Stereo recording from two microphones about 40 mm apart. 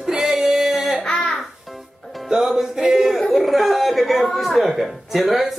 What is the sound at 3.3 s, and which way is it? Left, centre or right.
Speech, centre.